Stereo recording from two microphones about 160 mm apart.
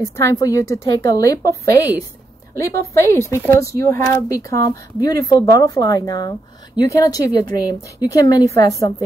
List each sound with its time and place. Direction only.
0.0 s speech: 20° left (ahead or behind)